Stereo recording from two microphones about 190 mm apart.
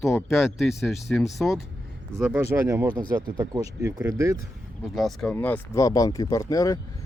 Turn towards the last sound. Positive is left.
turn(degrees=20)  # may be behind; listen again after turning